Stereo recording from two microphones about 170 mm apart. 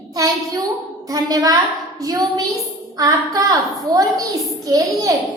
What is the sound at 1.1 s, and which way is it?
Speech, 20° right (ahead or behind).